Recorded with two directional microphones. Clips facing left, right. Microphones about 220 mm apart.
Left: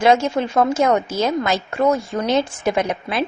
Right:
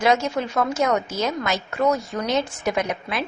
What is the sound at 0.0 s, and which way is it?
Speech, 30° left (ahead or behind).